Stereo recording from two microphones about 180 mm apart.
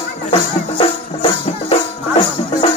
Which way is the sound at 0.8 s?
30° left (ahead or behind).